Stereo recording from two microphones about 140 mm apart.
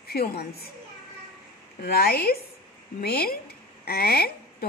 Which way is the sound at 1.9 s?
90° left.